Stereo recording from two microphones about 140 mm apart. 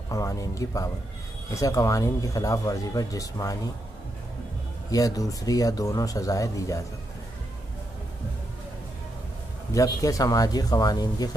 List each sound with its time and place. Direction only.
0.1 s speech: 25° left (ahead or behind)
4.9 s speech: 25° left (ahead or behind)
9.8 s speech: 25° left (ahead or behind)